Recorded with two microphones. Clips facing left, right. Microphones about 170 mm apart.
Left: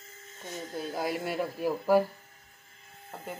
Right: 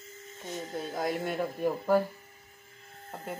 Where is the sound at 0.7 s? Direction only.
5° left (ahead or behind).